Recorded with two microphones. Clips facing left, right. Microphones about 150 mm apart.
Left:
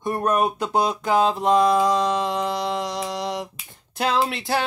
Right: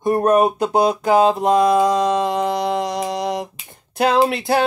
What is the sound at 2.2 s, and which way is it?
Mantra, 50° right (ahead or behind).